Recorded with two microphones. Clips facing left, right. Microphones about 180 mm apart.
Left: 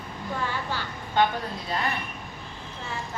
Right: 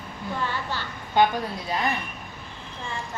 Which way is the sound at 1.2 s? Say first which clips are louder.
Right 3 dB; 10° right (ahead or behind).